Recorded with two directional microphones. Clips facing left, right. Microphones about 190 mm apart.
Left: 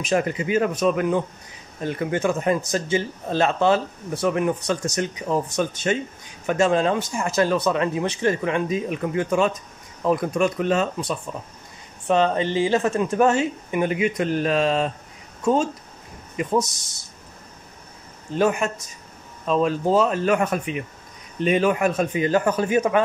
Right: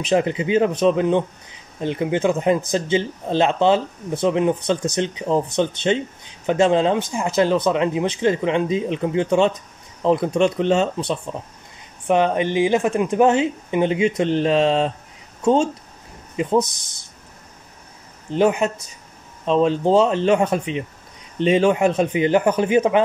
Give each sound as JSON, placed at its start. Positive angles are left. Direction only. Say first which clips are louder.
{"t": 0.0, "sound": "a woman's voice", "louder": "right 3 dB", "side_deg": -25}
{"t": 12.1, "sound": "a woman's voice", "louder": "right 2 dB", "side_deg": -15}
{"t": 18.3, "sound": "a woman's voice", "louder": "right 3 dB", "side_deg": -20}